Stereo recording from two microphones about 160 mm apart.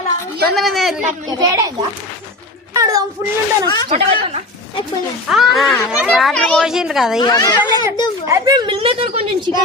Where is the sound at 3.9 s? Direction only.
40° right (ahead or behind).